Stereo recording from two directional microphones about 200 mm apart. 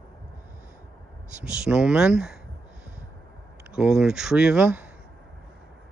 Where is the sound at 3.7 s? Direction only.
5° right (ahead or behind).